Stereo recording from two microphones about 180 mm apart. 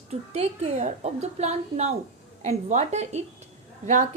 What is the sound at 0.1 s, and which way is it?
A woman's voice, 35° right (ahead or behind).